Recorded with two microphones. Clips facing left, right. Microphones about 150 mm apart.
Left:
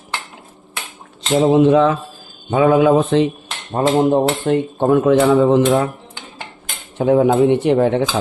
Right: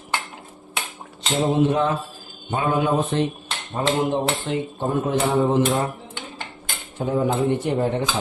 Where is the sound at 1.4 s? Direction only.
90° left.